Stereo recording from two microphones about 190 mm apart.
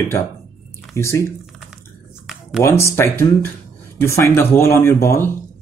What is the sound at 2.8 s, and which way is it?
Speech, 15° left (ahead or behind).